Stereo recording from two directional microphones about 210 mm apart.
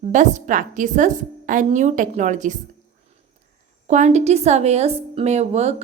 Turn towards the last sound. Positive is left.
turn(degrees=-30)  # may be behind; listen again after turning